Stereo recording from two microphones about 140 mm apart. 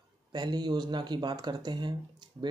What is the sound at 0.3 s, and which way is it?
Speech, 30° right (ahead or behind).